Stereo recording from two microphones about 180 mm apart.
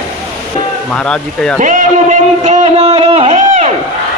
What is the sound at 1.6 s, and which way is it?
A man's voice, 45° right (ahead or behind).